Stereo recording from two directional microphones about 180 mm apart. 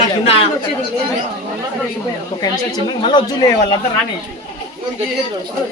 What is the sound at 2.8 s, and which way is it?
Speech, 25° left (ahead or behind).